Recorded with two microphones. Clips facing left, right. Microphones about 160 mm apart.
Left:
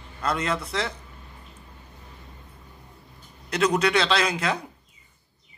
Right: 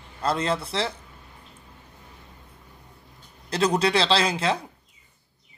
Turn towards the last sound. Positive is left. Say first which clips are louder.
# right 2 dB
turn(degrees=-30)  # may be behind; listen again after turning